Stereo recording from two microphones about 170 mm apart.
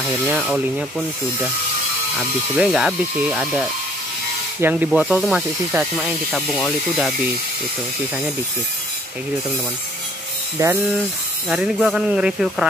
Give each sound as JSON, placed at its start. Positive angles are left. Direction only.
{"t": 0.4, "sound": "speech", "side_deg": 0}
{"t": 6.3, "sound": "speech", "side_deg": 5}
{"t": 10.6, "sound": "speech", "side_deg": -20}
{"t": 11.4, "sound": "speech", "side_deg": -5}